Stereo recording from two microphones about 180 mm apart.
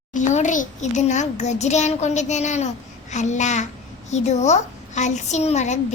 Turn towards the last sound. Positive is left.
turn(degrees=40)  # may be behind; listen again after turning